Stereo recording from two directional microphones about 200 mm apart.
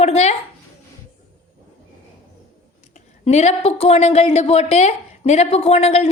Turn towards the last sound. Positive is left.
turn(degrees=30)  # may be behind; listen again after turning